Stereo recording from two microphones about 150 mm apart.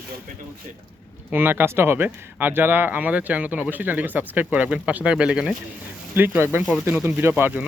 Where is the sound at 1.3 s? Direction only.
15° right (ahead or behind).